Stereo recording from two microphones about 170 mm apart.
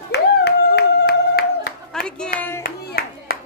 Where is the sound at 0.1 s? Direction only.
80° left.